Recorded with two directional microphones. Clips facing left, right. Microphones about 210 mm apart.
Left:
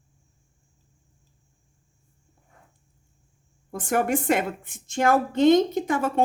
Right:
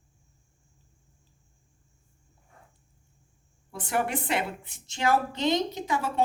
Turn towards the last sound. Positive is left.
turn(degrees=50)  # may be behind; listen again after turning